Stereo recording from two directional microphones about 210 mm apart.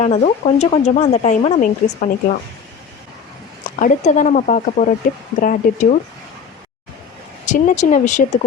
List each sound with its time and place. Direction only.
0.0 s speech: 30° left (ahead or behind)
3.8 s speech: 35° left (ahead or behind)
7.4 s speech: 35° left (ahead or behind)